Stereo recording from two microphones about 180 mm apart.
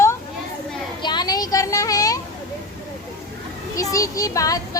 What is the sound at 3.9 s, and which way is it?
Speech, 20° left (ahead or behind).